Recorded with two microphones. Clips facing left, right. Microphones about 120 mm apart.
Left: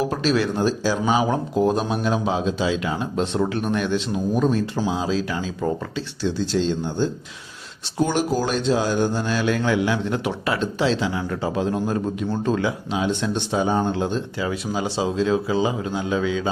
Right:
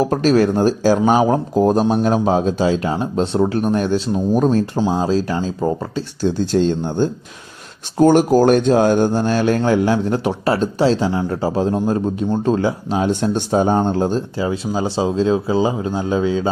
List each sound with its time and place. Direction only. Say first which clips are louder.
0.0 s speech: right 7 dB; 45° right (ahead or behind)
6.2 s speech: right 6 dB; 50° right (ahead or behind)